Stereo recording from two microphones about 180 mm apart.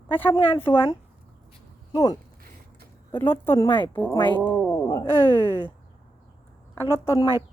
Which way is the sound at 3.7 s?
25° left (ahead or behind).